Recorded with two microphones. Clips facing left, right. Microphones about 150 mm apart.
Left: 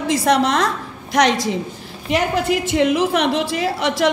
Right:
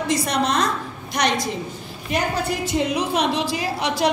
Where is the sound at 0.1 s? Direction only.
90° left.